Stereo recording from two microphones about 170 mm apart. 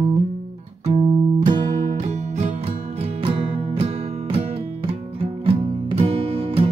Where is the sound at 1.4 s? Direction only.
40° right (ahead or behind).